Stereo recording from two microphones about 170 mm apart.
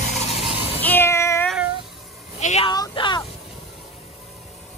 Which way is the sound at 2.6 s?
25° left (ahead or behind).